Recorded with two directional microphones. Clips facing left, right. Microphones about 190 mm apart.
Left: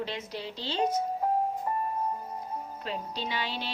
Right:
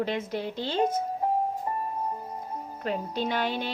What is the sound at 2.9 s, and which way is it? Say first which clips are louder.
Speech: right 7 dB; 50° right (ahead or behind).